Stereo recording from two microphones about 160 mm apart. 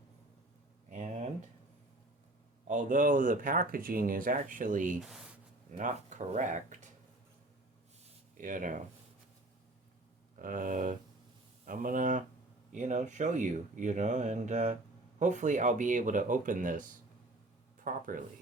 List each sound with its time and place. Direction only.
0.9 s a sound: 45° right (ahead or behind)
2.6 s speech: 50° right (ahead or behind)
4.9 s speech: centre (ahead or behind)
5.7 s speech: 50° right (ahead or behind)
8.4 s speech: 55° right (ahead or behind)
10.3 s speech: 55° right (ahead or behind)